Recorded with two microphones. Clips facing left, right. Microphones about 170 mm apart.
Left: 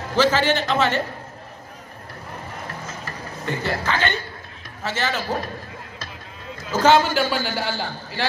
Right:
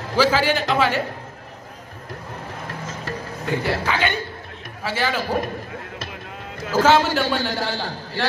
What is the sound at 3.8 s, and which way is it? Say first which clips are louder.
A man's voice: right 1 dB; 10° right (ahead or behind).